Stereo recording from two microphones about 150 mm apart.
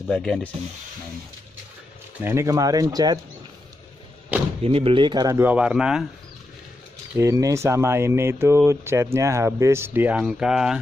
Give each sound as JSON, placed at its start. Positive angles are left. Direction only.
{"t": 0.1, "sound": "speech", "side_deg": 5}
{"t": 2.2, "sound": "speech", "side_deg": -20}
{"t": 4.6, "sound": "speech", "side_deg": -40}
{"t": 5.4, "sound": "speech", "side_deg": -10}
{"t": 7.2, "sound": "speech", "side_deg": -20}